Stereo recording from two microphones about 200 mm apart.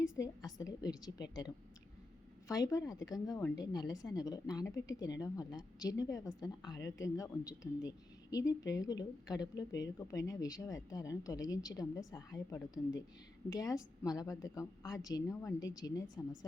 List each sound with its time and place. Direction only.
0.2 s a woman's voice: 20° left (ahead or behind)